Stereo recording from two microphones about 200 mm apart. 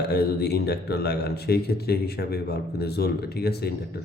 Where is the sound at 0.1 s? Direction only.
55° left (ahead or behind).